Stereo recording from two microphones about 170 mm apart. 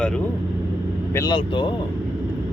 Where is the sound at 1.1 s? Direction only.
25° left (ahead or behind).